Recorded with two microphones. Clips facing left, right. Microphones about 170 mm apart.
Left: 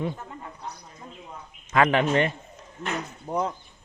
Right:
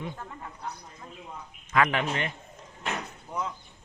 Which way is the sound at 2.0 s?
45° left (ahead or behind).